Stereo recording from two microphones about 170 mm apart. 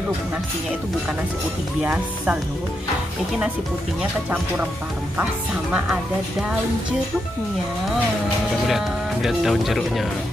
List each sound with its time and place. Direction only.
1.8 s speech: 10° right (ahead or behind)
5.1 s speech: 5° right (ahead or behind)
8.6 s speech: centre (ahead or behind)